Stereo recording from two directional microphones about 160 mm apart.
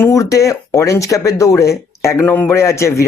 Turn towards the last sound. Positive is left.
turn(degrees=15)  # may be behind; listen again after turning